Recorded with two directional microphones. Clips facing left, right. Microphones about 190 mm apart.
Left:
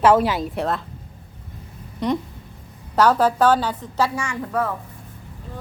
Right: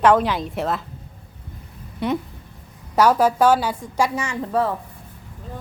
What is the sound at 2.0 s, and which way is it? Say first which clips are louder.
A woman's voice: left 1 dB; 5° right (ahead or behind).